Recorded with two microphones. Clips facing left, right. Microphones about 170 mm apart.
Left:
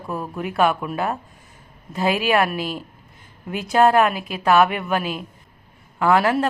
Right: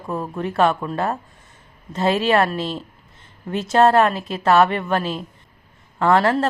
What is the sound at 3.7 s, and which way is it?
A woman's voice, centre (ahead or behind).